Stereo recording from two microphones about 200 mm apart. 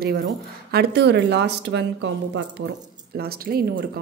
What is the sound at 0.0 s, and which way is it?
Speech, 50° right (ahead or behind).